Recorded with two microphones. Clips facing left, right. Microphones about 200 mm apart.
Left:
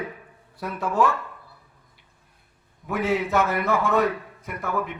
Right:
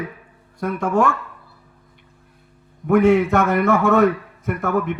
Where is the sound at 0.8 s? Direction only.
45° right (ahead or behind).